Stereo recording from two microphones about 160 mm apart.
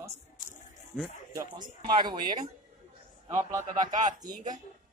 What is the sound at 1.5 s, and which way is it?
Speech, 25° right (ahead or behind).